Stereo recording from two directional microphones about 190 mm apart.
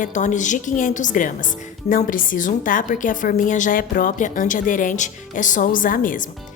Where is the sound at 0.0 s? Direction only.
40° left (ahead or behind).